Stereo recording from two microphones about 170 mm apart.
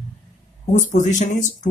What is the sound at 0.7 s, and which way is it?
Speech, 45° left (ahead or behind).